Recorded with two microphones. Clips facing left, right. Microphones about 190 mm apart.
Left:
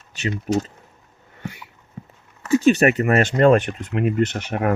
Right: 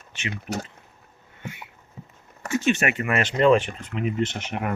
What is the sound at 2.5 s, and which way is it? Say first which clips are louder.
Speech: left 8 dB; 35° left (ahead or behind).